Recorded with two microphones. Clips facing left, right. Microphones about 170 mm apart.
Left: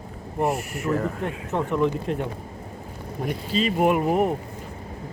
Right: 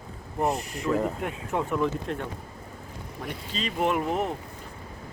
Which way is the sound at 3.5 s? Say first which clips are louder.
Left 6 dB; 10° left (ahead or behind).